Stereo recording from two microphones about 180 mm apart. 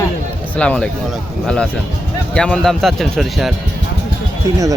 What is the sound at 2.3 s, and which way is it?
Speech, 5° left (ahead or behind).